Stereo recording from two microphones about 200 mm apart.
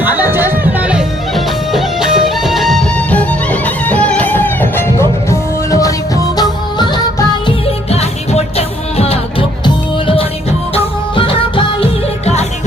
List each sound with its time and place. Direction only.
0.0 s music: 10° right (ahead or behind); by 12.5 s 30° left (ahead or behind)